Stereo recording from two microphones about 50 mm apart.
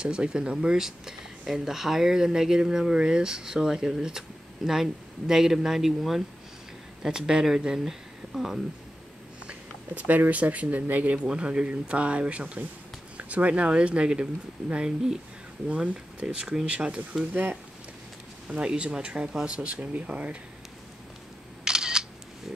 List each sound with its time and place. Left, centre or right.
0.0 s speech: centre
9.5 s speech: right
11.2 s speech: centre
15.7 s speech: right
18.5 s speech: centre
21.6 s single-lens reflex camera: centre